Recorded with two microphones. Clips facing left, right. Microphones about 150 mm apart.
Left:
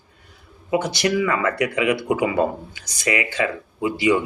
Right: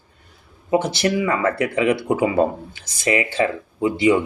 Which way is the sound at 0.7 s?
30° right (ahead or behind).